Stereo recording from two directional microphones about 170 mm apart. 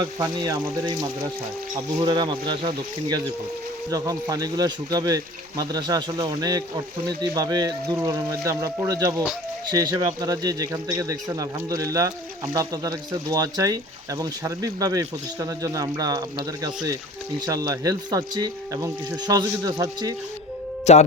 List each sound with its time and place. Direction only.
0.0 s speech: 20° right (ahead or behind)
2.0 s speech: 25° right (ahead or behind)
20.9 s speech: 40° left (ahead or behind)